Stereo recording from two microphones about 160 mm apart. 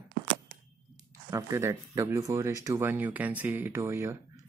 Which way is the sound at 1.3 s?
20° right (ahead or behind).